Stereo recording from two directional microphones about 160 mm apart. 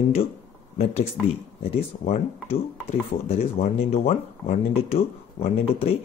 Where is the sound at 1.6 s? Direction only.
40° left (ahead or behind).